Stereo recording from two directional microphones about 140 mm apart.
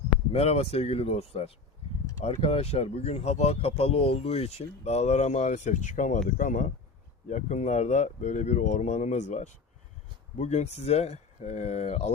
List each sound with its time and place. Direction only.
0.3 s speech: 45° left (ahead or behind)